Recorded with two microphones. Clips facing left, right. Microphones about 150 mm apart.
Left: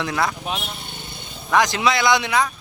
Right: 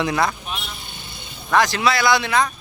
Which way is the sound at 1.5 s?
15° left (ahead or behind).